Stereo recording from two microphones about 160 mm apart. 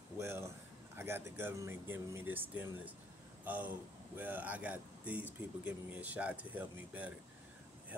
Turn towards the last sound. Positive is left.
turn(degrees=-10)  # may be behind; listen again after turning